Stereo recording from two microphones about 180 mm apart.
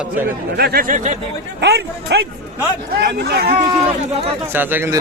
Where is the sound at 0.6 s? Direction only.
60° right (ahead or behind).